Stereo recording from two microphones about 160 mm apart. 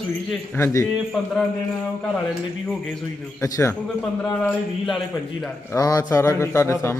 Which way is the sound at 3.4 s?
20° left (ahead or behind).